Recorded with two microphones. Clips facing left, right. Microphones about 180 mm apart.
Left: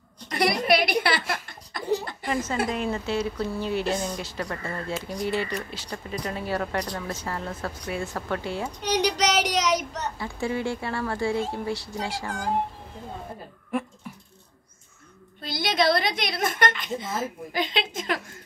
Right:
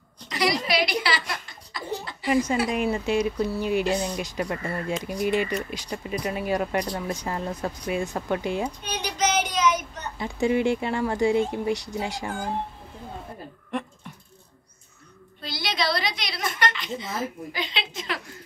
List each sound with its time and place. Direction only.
0.3 s laughter: 55° left (ahead or behind)
2.2 s speech: 15° right (ahead or behind)
8.8 s child singing: 75° left (ahead or behind)
10.1 s speech: 20° right (ahead or behind)
13.7 s a sound: 5° left (ahead or behind)
15.4 s a woman's voice: 50° left (ahead or behind)